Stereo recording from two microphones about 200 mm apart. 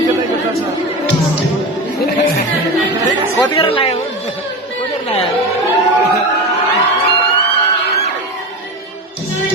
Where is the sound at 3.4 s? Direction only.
25° left (ahead or behind).